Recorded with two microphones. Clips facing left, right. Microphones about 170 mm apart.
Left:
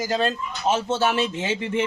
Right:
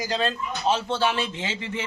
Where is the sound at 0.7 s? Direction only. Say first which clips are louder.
Left 2 dB; 20° left (ahead or behind).